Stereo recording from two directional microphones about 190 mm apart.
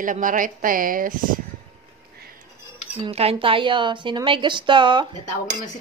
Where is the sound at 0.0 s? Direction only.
45° right (ahead or behind).